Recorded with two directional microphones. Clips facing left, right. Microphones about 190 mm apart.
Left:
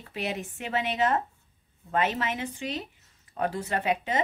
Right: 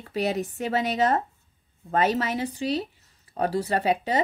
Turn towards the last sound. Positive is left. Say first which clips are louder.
# right 4 dB
turn(degrees=-35)  # may be behind; listen again after turning